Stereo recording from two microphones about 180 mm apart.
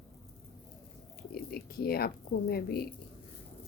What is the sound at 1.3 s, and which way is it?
Speech, 55° left (ahead or behind).